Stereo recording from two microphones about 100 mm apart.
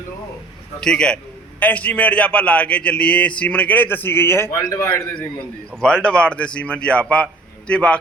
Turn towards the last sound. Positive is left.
turn(degrees=10)  # may be behind; listen again after turning